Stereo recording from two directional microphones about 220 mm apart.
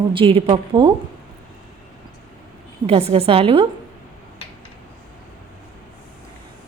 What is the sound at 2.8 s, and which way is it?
Speech, 25° right (ahead or behind).